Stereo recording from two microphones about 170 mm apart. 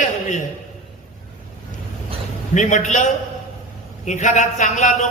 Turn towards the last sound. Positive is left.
turn(degrees=45)  # may be behind; listen again after turning